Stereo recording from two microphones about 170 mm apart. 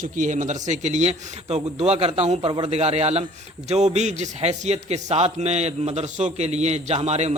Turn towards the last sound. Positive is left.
turn(degrees=-40)  # may be behind; listen again after turning